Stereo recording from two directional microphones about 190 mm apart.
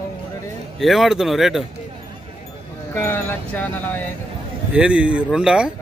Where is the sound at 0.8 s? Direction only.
Centre (ahead or behind).